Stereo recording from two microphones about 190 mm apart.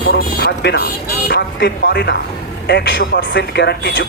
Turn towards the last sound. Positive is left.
turn(degrees=60)  # may be behind; listen again after turning